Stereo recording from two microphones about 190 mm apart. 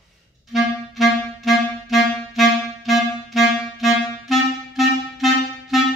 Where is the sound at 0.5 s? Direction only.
Centre (ahead or behind).